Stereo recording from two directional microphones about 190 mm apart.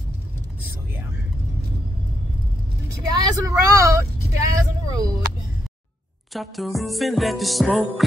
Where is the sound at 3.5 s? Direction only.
15° right (ahead or behind).